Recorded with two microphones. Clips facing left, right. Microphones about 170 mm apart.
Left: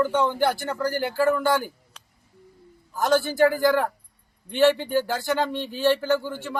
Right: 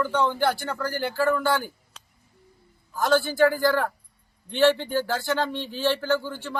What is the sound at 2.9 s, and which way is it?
A man's voice, 20° left (ahead or behind).